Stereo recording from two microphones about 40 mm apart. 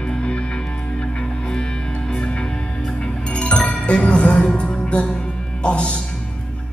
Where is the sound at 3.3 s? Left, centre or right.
Left.